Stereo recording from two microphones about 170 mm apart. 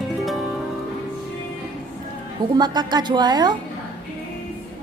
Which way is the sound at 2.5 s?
25° right (ahead or behind).